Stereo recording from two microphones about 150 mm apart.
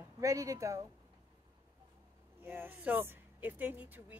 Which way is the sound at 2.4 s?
15° right (ahead or behind).